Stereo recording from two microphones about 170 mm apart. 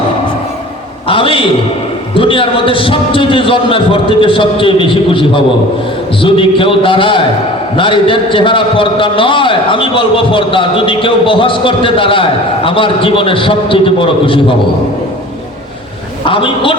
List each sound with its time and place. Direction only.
1.0 s a sound: 30° left (ahead or behind)
2.1 s a man's voice: 30° left (ahead or behind)
16.2 s a man's voice: 30° left (ahead or behind)